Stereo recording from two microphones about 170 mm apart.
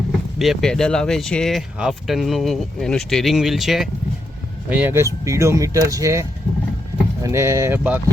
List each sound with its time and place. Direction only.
0.3 s speech: centre (ahead or behind)
4.7 s speech: 10° right (ahead or behind)